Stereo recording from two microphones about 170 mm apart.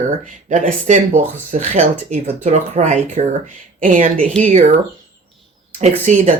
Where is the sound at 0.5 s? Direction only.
45° right (ahead or behind).